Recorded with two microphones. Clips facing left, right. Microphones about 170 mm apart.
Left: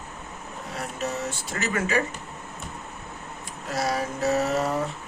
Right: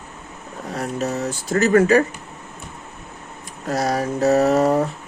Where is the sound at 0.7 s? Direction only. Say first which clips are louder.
Right 7 dB; 40° right (ahead or behind).